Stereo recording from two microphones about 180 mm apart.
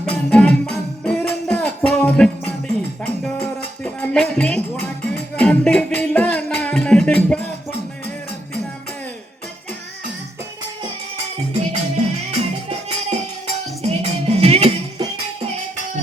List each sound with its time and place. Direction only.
0.0 s music: 5° left (ahead or behind)
11.5 s music: 40° right (ahead or behind)